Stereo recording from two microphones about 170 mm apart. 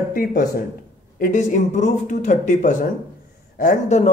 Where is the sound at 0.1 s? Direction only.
60° left (ahead or behind).